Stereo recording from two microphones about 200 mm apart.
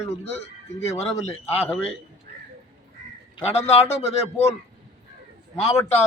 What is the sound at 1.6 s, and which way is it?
Speech, 10° left (ahead or behind).